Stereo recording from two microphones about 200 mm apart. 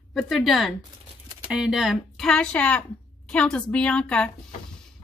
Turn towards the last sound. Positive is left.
turn(degrees=5)  # may be behind; listen again after turning